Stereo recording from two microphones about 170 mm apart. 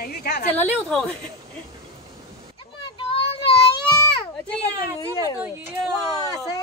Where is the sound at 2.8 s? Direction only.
30° left (ahead or behind).